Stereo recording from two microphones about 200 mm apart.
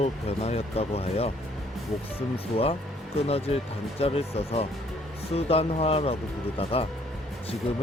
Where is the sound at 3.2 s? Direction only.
30° left (ahead or behind).